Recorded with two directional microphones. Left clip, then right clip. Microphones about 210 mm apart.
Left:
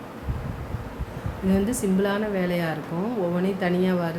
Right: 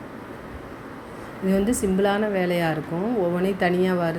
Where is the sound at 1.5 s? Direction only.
15° right (ahead or behind).